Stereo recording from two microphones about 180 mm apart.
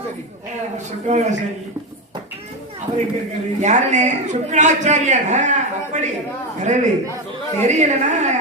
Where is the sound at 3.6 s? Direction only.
40° right (ahead or behind).